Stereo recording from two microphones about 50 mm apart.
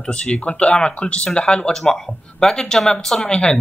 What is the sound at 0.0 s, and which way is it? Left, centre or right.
Speech, centre.